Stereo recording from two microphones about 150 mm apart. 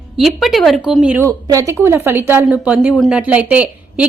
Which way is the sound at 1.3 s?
20° right (ahead or behind).